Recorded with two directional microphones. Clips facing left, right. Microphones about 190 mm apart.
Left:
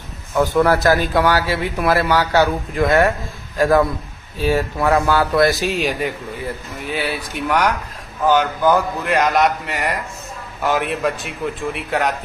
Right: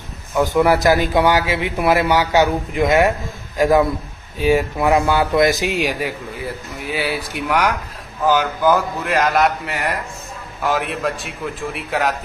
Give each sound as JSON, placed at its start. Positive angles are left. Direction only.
{"t": 0.3, "sound": "a man's voice", "side_deg": -15}